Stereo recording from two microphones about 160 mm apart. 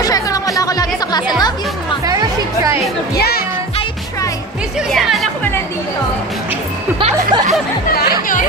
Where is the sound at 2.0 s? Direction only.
20° right (ahead or behind).